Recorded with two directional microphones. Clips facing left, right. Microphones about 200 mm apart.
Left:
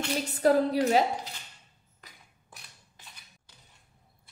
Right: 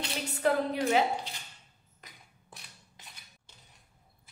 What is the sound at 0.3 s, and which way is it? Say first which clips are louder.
Speech: left 5 dB; 40° left (ahead or behind).